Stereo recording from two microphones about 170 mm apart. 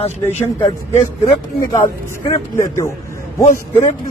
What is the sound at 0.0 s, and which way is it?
Speech, 35° left (ahead or behind).